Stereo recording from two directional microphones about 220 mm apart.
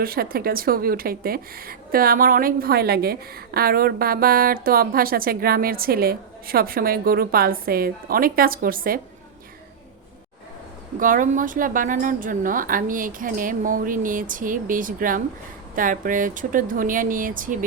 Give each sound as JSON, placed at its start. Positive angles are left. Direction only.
{"t": 0.0, "sound": "speech", "side_deg": -40}
{"t": 11.0, "sound": "a woman's voice", "side_deg": -35}